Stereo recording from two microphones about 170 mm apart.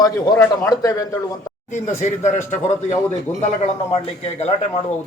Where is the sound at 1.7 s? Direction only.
45° left (ahead or behind).